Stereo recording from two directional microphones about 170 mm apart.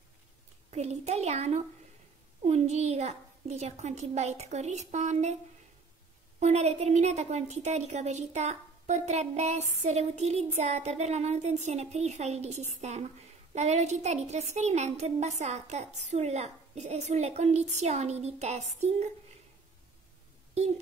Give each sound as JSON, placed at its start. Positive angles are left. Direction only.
{"t": 0.7, "sound": "a woman's voice", "side_deg": -40}
{"t": 6.4, "sound": "a woman's voice", "side_deg": -40}
{"t": 20.5, "sound": "speech", "side_deg": -40}